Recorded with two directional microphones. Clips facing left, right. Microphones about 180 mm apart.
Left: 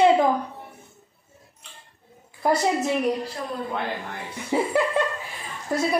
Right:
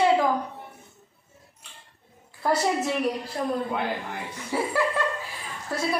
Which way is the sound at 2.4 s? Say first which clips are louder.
Left 2 dB; 15° left (ahead or behind).